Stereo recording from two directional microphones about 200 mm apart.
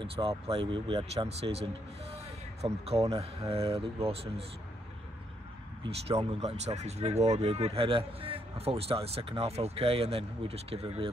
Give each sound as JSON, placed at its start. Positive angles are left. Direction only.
{"t": 0.0, "sound": "speech", "side_deg": -25}
{"t": 6.0, "sound": "speech", "side_deg": -30}